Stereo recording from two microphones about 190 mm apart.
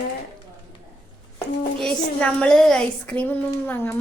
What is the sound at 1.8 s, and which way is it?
Speech, 5° left (ahead or behind).